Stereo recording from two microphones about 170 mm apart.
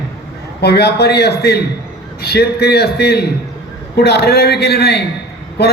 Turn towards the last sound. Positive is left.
turn(degrees=75)  # may be behind; listen again after turning